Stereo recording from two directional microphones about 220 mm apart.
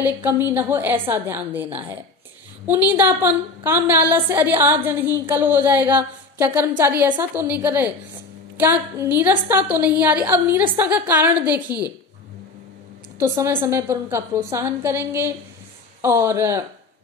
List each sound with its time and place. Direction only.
0.0 s a woman's voice: 10° right (ahead or behind)
2.9 s a woman's voice: 10° right (ahead or behind)
13.2 s a woman's voice: 10° right (ahead or behind)